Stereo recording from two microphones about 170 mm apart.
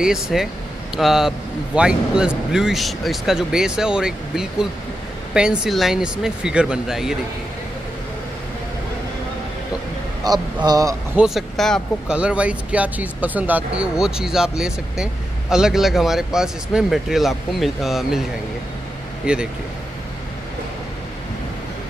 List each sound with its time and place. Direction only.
0.0 s speech: 5° right (ahead or behind)
10.2 s speech: 25° right (ahead or behind)
11.1 s speech: centre (ahead or behind)
19.2 s speech: 5° right (ahead or behind)